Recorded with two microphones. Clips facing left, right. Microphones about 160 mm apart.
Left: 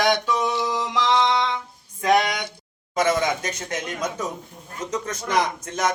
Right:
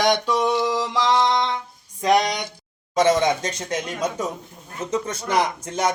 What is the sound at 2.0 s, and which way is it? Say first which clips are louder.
Speech: right 1 dB; 15° right (ahead or behind).